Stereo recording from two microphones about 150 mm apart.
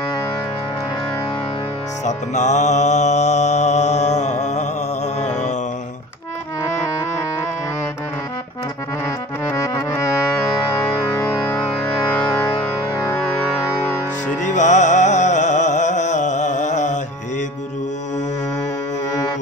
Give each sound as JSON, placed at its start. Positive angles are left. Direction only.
{"t": 2.0, "sound": "music", "side_deg": 50}
{"t": 6.6, "sound": "music", "side_deg": 20}
{"t": 9.5, "sound": "accordion", "side_deg": 20}
{"t": 11.1, "sound": "music", "side_deg": 20}
{"t": 12.9, "sound": "music", "side_deg": 20}
{"t": 14.4, "sound": "music", "side_deg": 55}